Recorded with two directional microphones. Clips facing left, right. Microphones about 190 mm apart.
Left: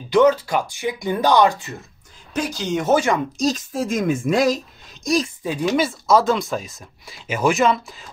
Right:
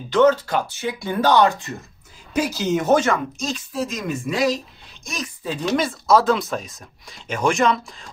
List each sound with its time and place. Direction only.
0.1 s speech: 10° left (ahead or behind)
2.3 s speech: 5° right (ahead or behind)
3.3 s a woman's voice: 40° left (ahead or behind)
5.0 s speech: 35° left (ahead or behind)
5.4 s speech: 15° left (ahead or behind)
5.8 s speech: centre (ahead or behind)